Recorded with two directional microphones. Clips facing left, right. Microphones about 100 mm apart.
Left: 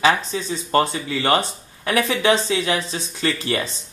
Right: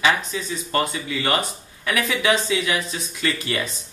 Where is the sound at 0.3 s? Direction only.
30° left (ahead or behind).